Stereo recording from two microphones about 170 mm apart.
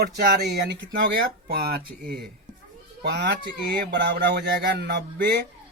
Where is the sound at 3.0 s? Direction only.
75° right (ahead or behind).